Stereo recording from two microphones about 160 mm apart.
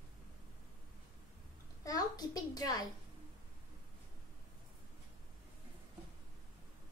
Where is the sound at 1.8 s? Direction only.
25° left (ahead or behind).